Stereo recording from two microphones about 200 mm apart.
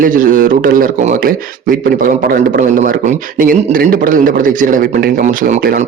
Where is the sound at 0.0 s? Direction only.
45° right (ahead or behind).